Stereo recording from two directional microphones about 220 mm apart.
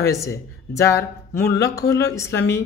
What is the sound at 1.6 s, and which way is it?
Speech, 15° left (ahead or behind).